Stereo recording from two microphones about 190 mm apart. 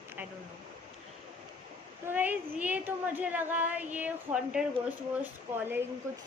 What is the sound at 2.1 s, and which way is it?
A woman's voice, 10° right (ahead or behind).